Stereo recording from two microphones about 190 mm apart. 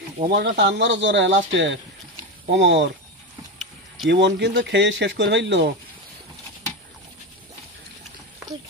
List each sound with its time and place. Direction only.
0.3 s speech: 65° right (ahead or behind)
4.1 s speech: 65° right (ahead or behind)